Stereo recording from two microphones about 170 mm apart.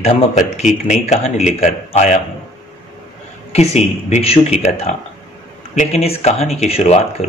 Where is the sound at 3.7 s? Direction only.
40° left (ahead or behind).